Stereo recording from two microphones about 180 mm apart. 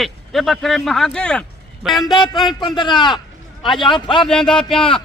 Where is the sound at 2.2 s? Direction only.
25° left (ahead or behind).